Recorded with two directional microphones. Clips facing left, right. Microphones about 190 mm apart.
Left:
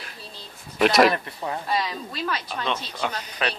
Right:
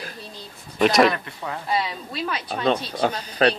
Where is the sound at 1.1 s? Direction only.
30° left (ahead or behind).